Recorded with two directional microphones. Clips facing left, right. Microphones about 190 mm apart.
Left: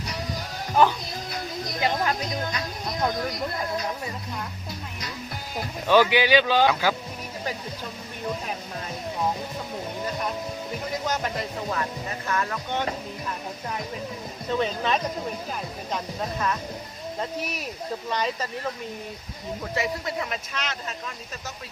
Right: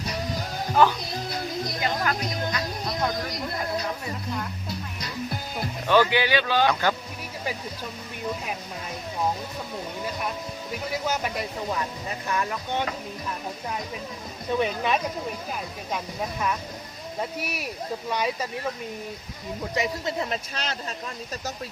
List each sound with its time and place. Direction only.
1.8 s speech: 25° left (ahead or behind)
5.9 s speech: 15° left (ahead or behind)
11.0 s speech: 10° right (ahead or behind)
14.5 s speech: 10° right (ahead or behind)
17.2 s speech: 10° right (ahead or behind)
19.7 s speech: 20° right (ahead or behind)